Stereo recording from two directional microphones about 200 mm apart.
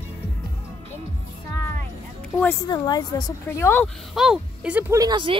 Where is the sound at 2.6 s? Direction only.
20° left (ahead or behind).